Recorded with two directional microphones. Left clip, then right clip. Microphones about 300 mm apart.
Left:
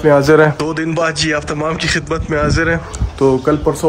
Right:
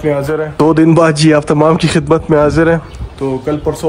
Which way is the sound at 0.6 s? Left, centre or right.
Centre.